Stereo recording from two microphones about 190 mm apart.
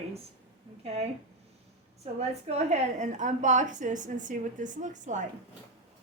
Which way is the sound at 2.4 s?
35° right (ahead or behind).